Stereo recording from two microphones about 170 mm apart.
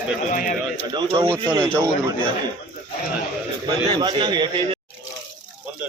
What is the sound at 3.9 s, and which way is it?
Speech, 25° right (ahead or behind).